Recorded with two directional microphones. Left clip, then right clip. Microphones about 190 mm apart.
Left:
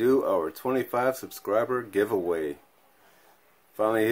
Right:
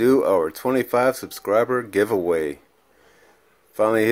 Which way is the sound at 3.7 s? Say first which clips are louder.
Right 6 dB; 30° right (ahead or behind).